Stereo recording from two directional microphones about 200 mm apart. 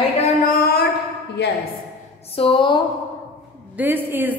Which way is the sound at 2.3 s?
25° left (ahead or behind).